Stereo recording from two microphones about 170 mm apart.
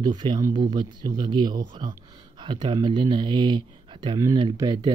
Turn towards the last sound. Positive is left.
turn(degrees=-25)  # may be behind; listen again after turning